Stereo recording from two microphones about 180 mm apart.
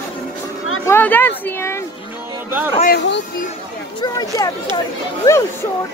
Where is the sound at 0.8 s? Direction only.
10° left (ahead or behind).